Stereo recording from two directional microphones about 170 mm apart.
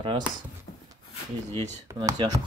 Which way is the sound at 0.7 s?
35° left (ahead or behind).